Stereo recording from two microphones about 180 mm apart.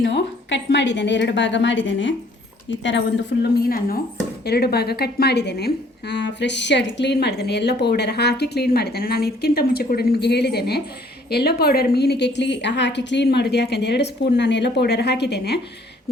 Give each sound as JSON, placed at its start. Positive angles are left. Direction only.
{"t": 0.7, "sound": "a woman's voice", "side_deg": 75}
{"t": 2.8, "sound": "a woman's voice", "side_deg": 80}